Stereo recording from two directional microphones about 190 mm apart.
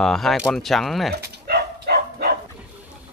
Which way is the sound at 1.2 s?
55° right (ahead or behind).